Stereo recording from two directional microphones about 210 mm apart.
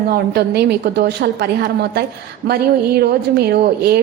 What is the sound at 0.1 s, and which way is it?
A woman's voice, 50° right (ahead or behind).